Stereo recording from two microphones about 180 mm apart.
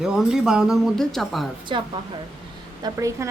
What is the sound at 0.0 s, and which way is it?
Speech, 5° right (ahead or behind).